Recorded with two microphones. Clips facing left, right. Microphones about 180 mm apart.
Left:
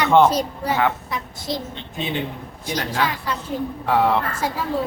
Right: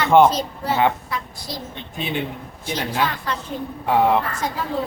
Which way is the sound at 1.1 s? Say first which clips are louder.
Left 3 dB; 20° left (ahead or behind).